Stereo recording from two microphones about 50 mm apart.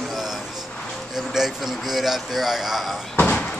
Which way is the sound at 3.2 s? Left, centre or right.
Left.